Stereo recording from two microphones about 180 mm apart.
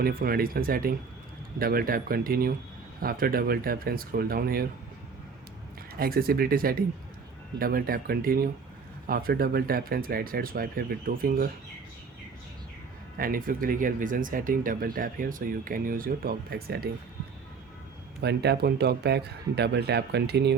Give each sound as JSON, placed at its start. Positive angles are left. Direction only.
{"t": 0.0, "sound": "speech", "side_deg": -55}
{"t": 6.0, "sound": "speech", "side_deg": -55}
{"t": 13.1, "sound": "speech", "side_deg": -50}
{"t": 18.2, "sound": "speech", "side_deg": -65}